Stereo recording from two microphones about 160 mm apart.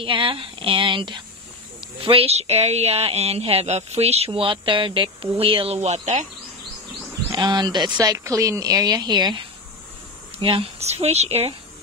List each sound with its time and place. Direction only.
0.0 s speech: 35° right (ahead or behind)
7.2 s speech: 25° right (ahead or behind)
10.4 s speech: 35° right (ahead or behind)